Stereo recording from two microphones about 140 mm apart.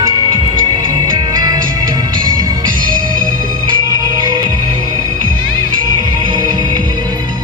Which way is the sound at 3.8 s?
30° right (ahead or behind).